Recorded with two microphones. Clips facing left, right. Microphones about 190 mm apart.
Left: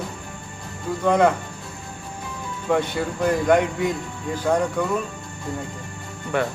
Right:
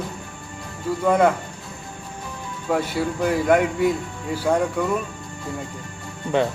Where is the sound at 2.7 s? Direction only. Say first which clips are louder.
Even; 5° right (ahead or behind).